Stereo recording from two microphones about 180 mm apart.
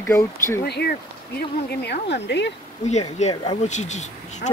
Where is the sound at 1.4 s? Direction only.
65° left (ahead or behind).